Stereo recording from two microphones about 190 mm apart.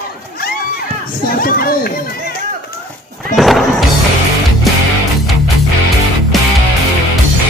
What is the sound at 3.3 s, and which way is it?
Music, centre (ahead or behind).